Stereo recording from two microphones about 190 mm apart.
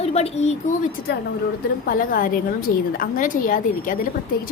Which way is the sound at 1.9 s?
45° left (ahead or behind).